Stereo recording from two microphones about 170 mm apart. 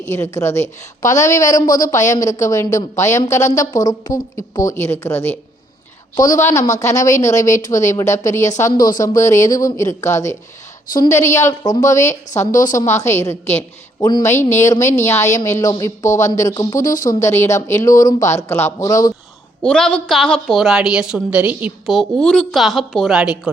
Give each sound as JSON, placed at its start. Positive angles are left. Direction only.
{"t": 0.1, "sound": "a woman's voice", "side_deg": 15}
{"t": 1.6, "sound": "a woman's voice", "side_deg": 55}
{"t": 1.9, "sound": "a woman's voice", "side_deg": 20}
{"t": 6.7, "sound": "a woman's voice", "side_deg": 20}
{"t": 8.4, "sound": "a woman's voice", "side_deg": 45}
{"t": 9.0, "sound": "a woman's voice", "side_deg": 20}
{"t": 12.3, "sound": "a woman's voice", "side_deg": 45}
{"t": 13.0, "sound": "a woman's voice", "side_deg": 15}
{"t": 16.8, "sound": "a woman's voice", "side_deg": 50}
{"t": 17.2, "sound": "a woman's voice", "side_deg": 15}
{"t": 19.6, "sound": "a woman's voice", "side_deg": 5}